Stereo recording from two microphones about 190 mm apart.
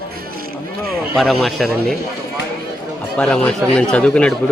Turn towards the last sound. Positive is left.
turn(degrees=5)  # may be behind; listen again after turning